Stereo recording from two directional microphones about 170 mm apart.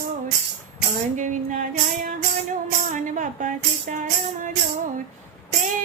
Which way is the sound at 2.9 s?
50° right (ahead or behind).